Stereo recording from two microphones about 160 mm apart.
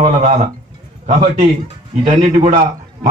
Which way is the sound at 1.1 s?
50° right (ahead or behind).